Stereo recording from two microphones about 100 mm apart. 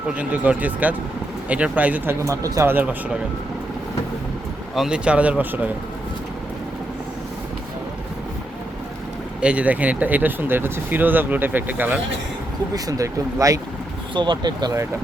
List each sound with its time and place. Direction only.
0.1 s speech: 15° right (ahead or behind)
2.2 s speech: 30° right (ahead or behind)
2.6 s speech: 20° right (ahead or behind)
4.7 s speech: 5° right (ahead or behind)
9.4 s speech: 10° right (ahead or behind)
12.7 s speech: 35° right (ahead or behind)
14.1 s speech: 50° right (ahead or behind)